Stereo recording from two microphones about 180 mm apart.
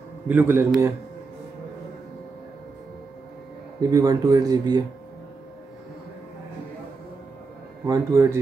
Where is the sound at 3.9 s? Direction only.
20° right (ahead or behind).